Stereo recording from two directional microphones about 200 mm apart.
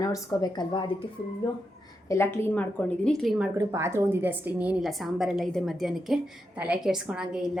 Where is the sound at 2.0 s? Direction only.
10° left (ahead or behind).